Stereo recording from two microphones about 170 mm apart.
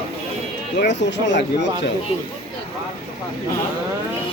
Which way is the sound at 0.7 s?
90° left.